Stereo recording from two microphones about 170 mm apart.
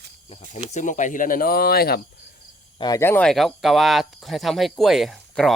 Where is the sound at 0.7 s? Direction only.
45° left (ahead or behind); by 2.0 s 65° left (ahead or behind).